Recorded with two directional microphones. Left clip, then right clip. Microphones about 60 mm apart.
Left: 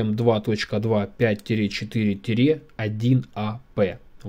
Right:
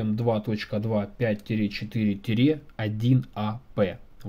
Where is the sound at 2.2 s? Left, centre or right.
Left.